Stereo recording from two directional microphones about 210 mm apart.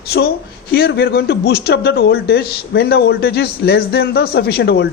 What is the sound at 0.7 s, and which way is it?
A man's voice, 50° left (ahead or behind).